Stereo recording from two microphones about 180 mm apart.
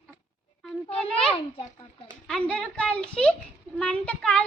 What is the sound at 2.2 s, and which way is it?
A woman's voice, 5° left (ahead or behind).